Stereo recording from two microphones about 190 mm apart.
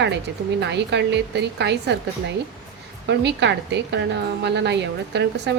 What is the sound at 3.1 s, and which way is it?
A woman's voice, 65° right (ahead or behind).